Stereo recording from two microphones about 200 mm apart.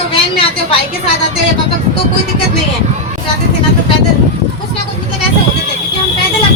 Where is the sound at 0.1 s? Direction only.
30° left (ahead or behind).